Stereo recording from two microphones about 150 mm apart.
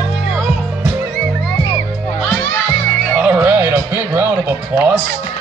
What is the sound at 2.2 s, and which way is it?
Music, 10° left (ahead or behind).